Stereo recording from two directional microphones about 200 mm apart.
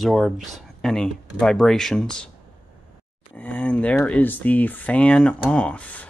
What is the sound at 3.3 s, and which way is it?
Speech, 5° left (ahead or behind).